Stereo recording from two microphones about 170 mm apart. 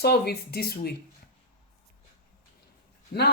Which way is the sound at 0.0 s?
65° left (ahead or behind).